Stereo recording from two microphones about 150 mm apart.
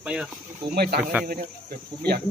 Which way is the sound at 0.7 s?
90° right.